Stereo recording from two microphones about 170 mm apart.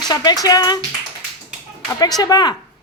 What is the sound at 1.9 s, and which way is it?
Speech, 20° left (ahead or behind).